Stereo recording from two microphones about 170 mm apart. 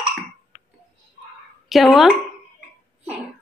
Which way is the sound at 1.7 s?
Centre (ahead or behind).